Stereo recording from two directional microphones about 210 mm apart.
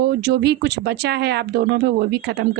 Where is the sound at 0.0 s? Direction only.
50° right (ahead or behind).